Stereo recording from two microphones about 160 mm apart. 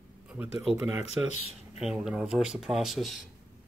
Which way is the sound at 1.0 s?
45° left (ahead or behind).